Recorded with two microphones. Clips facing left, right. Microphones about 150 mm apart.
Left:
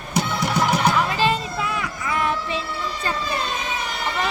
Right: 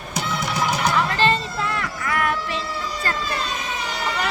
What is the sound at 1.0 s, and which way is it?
Music, 10° left (ahead or behind).